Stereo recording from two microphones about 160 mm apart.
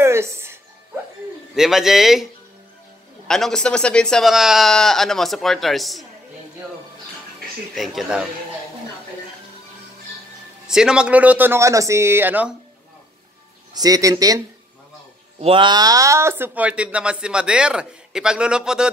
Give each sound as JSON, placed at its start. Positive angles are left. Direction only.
{"t": 0.0, "sound": "music", "side_deg": -15}
{"t": 1.5, "sound": "speech", "side_deg": 0}
{"t": 3.3, "sound": "speech", "side_deg": 0}
{"t": 7.7, "sound": "speech", "side_deg": 0}
{"t": 10.7, "sound": "speech", "side_deg": -5}
{"t": 13.7, "sound": "speech", "side_deg": -20}
{"t": 15.4, "sound": "speech", "side_deg": -30}